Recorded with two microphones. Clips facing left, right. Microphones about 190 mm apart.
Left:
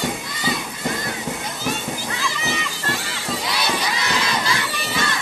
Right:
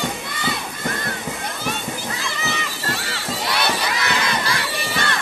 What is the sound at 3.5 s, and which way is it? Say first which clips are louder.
Crowd: right 2 dB; 55° right (ahead or behind).